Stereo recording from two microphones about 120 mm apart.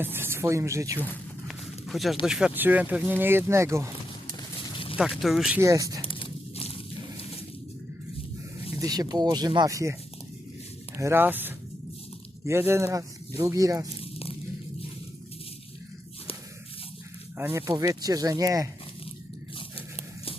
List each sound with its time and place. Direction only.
0.0 s speech: 20° right (ahead or behind)
1.5 s a sound: centre (ahead or behind)
2.2 s speech: 5° right (ahead or behind); by 3.9 s 25° right (ahead or behind)
4.9 s speech: 5° right (ahead or behind)
5.5 s speech: 25° right (ahead or behind)
6.1 s a sound: 45° left (ahead or behind)
8.8 s speech: 35° right (ahead or behind)
10.9 s speech: 20° right (ahead or behind)
14.0 s biting: 55° left (ahead or behind)
17.3 s speech: 20° right (ahead or behind)